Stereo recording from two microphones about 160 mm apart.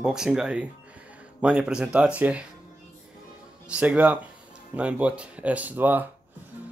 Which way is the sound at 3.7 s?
10° right (ahead or behind).